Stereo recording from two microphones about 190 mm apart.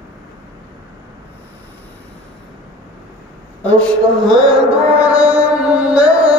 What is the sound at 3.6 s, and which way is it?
Music, 5° left (ahead or behind).